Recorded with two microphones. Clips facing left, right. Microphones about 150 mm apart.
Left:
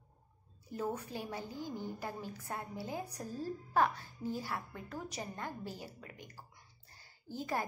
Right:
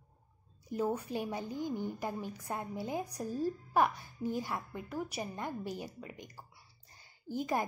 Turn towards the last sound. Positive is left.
turn(degrees=-15)  # may be behind; listen again after turning